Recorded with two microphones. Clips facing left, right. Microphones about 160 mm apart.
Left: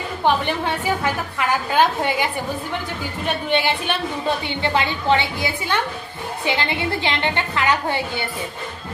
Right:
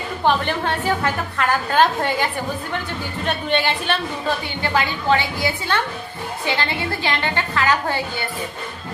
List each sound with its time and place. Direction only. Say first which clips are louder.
0.4 s a woman's voice: right 1 dB; 10° left (ahead or behind)
3.5 s a woman's voice: even; 10° left (ahead or behind)
4.4 s a woman's voice: left 1 dB; 25° left (ahead or behind)